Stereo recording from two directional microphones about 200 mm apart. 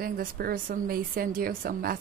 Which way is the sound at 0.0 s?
45° right (ahead or behind).